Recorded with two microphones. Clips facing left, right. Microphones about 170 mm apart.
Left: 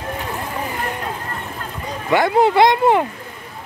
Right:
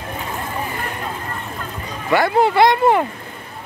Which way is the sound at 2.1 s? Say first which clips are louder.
Left 1 dB; 20° left (ahead or behind).